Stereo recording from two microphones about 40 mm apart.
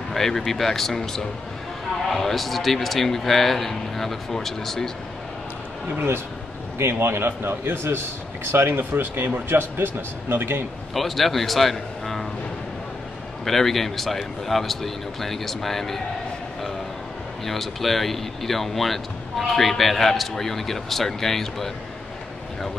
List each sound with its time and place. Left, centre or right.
0.1 s speech: centre
6.8 s a man's voice: right
8.5 s speech: right
11.0 s speech: centre
13.5 s speech: centre
17.5 s speech: centre